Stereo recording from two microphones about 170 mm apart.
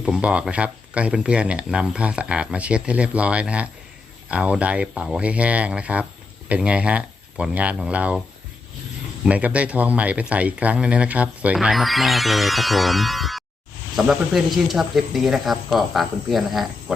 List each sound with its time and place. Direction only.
0.0 s speech: 5° right (ahead or behind)
9.2 s speech: 10° right (ahead or behind)